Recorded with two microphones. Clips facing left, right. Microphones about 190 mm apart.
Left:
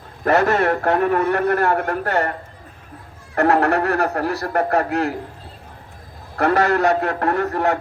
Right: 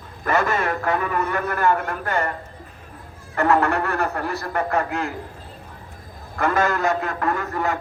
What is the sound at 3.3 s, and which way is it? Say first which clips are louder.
A man's voice: left 3 dB; 65° left (ahead or behind).